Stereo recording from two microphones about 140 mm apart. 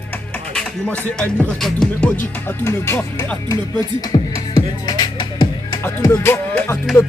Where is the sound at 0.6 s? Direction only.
10° left (ahead or behind).